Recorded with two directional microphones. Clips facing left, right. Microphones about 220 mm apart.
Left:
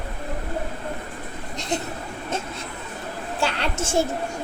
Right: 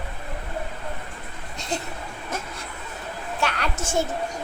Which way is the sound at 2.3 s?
25° left (ahead or behind).